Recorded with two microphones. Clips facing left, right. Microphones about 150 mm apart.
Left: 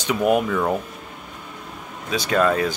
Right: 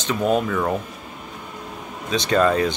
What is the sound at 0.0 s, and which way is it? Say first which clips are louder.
Speech: left 1 dB; 10° left (ahead or behind).